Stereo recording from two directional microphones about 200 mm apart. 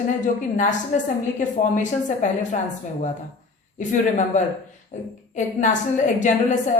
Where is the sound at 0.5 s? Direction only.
40° left (ahead or behind).